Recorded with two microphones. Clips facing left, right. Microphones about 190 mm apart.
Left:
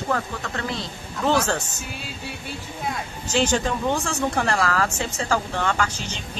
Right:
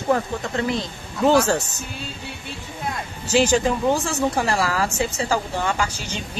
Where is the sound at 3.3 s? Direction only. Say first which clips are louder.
Right 4 dB; 10° right (ahead or behind).